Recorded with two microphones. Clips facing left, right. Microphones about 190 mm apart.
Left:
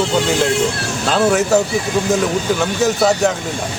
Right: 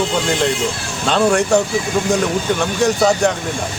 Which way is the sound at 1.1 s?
Centre (ahead or behind).